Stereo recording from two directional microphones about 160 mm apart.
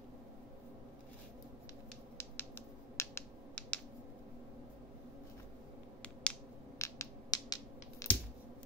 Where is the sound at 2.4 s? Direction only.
15° left (ahead or behind).